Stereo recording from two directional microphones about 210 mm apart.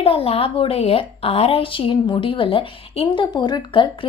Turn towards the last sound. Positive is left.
turn(degrees=20)  # may be behind; listen again after turning